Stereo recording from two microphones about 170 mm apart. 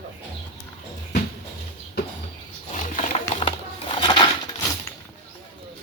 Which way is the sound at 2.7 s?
45° left (ahead or behind).